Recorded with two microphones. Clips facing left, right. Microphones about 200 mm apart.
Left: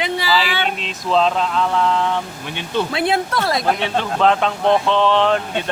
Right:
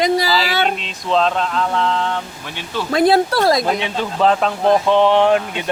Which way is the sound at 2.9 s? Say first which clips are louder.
Right 11 dB; 40° right (ahead or behind).